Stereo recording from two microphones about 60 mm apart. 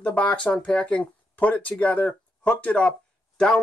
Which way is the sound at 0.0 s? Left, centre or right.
Left.